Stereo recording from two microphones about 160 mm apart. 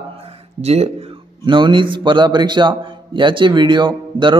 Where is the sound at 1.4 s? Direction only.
30° right (ahead or behind).